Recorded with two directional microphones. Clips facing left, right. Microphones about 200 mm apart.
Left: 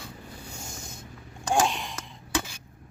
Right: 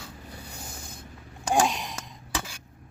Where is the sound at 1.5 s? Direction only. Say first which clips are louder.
Right 1 dB; 15° right (ahead or behind).